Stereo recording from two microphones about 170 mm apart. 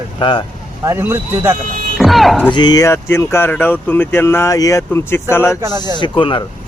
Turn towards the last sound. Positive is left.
turn(degrees=30)  # may be behind; listen again after turning